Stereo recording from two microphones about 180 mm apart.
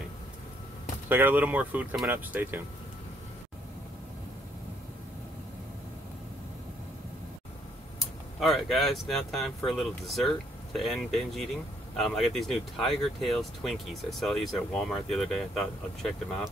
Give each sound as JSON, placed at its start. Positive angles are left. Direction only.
{"t": 1.0, "sound": "speech", "side_deg": -10}
{"t": 8.4, "sound": "speech", "side_deg": 0}